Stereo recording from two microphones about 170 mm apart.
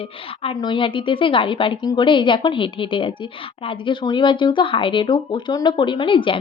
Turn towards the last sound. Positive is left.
turn(degrees=30)  # may be behind; listen again after turning